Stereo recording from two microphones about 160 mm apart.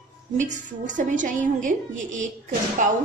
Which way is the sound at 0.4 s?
50° right (ahead or behind).